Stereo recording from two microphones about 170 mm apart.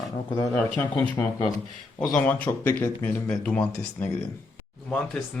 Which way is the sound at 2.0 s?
5° left (ahead or behind).